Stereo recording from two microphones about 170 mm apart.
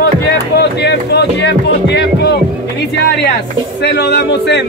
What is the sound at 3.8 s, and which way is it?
Speech, 80° left.